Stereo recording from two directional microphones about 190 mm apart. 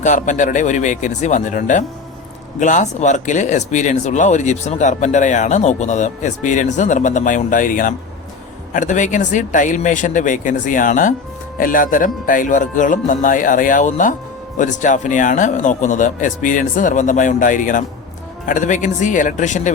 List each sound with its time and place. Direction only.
0.0 s speech: 40° left (ahead or behind)